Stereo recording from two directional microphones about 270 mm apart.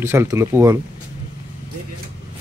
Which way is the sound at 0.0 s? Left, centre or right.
Centre.